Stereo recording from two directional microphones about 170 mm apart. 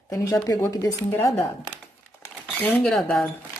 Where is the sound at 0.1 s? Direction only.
20° left (ahead or behind).